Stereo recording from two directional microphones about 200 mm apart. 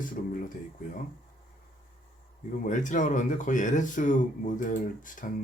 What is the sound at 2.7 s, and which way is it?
Speech, 40° left (ahead or behind).